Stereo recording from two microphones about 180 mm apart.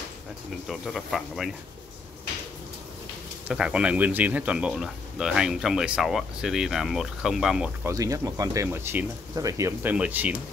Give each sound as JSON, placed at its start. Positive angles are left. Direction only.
{"t": 0.7, "sound": "speech", "side_deg": 0}
{"t": 3.4, "sound": "speech", "side_deg": -5}
{"t": 7.9, "sound": "speech", "side_deg": -20}